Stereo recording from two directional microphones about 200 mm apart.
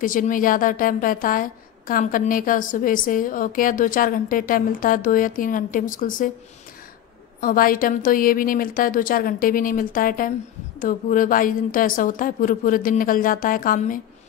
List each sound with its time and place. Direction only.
0.0 s a woman's voice: 40° left (ahead or behind)
7.3 s a woman's voice: 45° left (ahead or behind)